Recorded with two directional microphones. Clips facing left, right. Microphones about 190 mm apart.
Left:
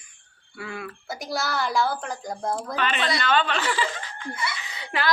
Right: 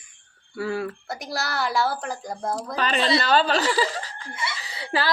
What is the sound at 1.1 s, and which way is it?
Speech, centre (ahead or behind).